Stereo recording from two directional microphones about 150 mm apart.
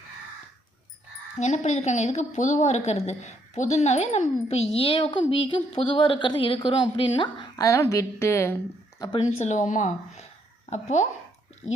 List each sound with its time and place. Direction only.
1.4 s a woman's voice: 50° left (ahead or behind); by 7.5 s 30° left (ahead or behind)
7.5 s a woman's voice: 20° left (ahead or behind)
9.4 s a woman's voice: 55° left (ahead or behind)
11.6 s speech: 5° right (ahead or behind)